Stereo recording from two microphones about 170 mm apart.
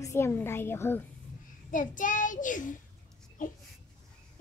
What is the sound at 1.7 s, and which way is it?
Child singing, 50° left (ahead or behind).